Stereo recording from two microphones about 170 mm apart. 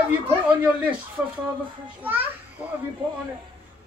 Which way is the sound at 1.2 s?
10° right (ahead or behind).